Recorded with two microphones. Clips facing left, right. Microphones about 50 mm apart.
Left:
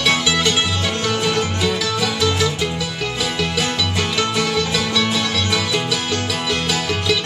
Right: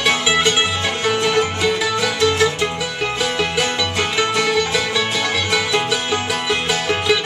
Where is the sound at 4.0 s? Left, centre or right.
Centre.